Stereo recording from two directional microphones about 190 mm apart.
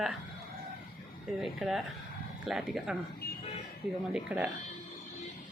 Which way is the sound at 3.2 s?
55° left (ahead or behind).